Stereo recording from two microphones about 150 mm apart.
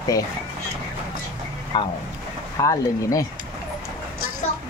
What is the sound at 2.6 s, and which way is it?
Speech, 20° left (ahead or behind).